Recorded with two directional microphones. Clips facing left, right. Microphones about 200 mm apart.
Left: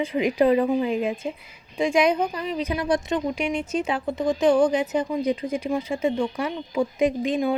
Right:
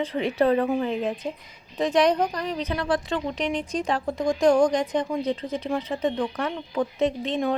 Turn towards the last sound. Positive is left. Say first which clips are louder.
# left 2 dB
turn(degrees=10)  # may be behind; listen again after turning